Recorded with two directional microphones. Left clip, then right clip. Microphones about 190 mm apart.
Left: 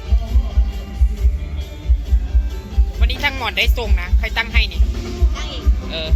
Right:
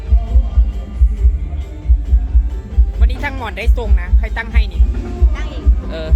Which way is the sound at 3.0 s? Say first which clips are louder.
Left 3 dB; 15° right (ahead or behind).